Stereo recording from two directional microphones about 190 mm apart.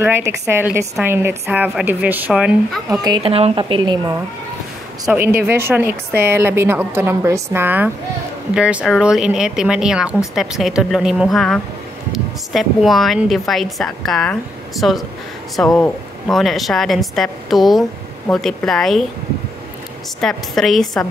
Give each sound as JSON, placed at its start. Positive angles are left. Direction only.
{"t": 0.0, "sound": "a woman's voice", "side_deg": -10}
{"t": 3.0, "sound": "a woman's voice", "side_deg": -25}
{"t": 5.0, "sound": "a woman's voice", "side_deg": -10}
{"t": 20.2, "sound": "speech", "side_deg": 0}